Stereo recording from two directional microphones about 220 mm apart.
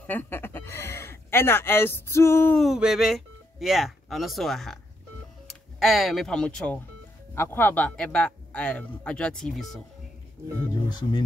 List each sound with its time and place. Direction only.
0.0 s speech: 10° left (ahead or behind)
5.8 s speech: centre (ahead or behind)
11.0 s speech: 20° left (ahead or behind)